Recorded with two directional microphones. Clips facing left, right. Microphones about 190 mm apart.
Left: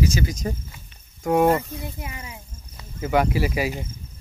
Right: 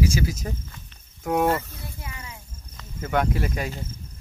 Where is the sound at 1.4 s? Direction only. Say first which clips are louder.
Left 4 dB; 15° left (ahead or behind).